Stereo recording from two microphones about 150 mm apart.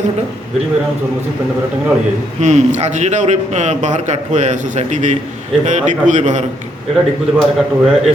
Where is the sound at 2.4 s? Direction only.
50° right (ahead or behind).